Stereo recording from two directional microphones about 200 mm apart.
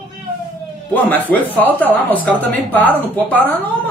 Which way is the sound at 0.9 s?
10° left (ahead or behind).